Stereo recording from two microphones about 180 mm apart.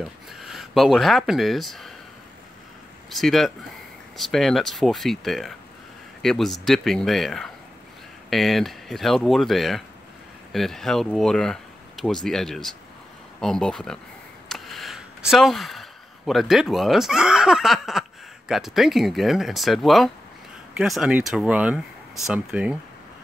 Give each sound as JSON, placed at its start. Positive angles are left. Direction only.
{"t": 0.3, "sound": "speech", "side_deg": 0}
{"t": 3.1, "sound": "speech", "side_deg": 0}